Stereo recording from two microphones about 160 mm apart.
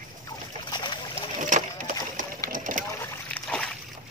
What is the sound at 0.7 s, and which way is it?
Boat, 30° left (ahead or behind).